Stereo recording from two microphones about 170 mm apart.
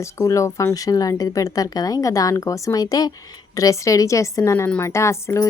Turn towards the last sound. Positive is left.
turn(degrees=15)  # may be behind; listen again after turning